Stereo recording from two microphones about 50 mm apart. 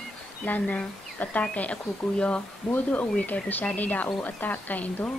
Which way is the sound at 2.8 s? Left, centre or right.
Left.